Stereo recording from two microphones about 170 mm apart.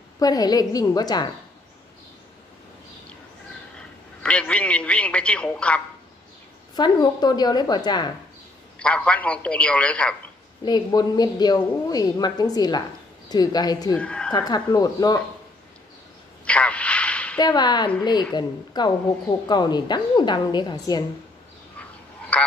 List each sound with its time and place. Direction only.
0.2 s a woman's voice: 20° left (ahead or behind)
3.7 s a man's voice: 5° left (ahead or behind)
6.7 s a woman's voice: 25° left (ahead or behind)
8.7 s a man's voice: 5° left (ahead or behind)
10.6 s a woman's voice: 25° left (ahead or behind)
13.9 s speech: 5° left (ahead or behind)
14.3 s a woman's voice: 25° left (ahead or behind)
16.4 s a sound: 5° left (ahead or behind)
17.4 s a woman's voice: 25° left (ahead or behind)
22.3 s frog: 10° left (ahead or behind)